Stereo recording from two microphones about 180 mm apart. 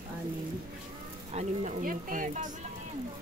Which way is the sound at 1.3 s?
40° right (ahead or behind).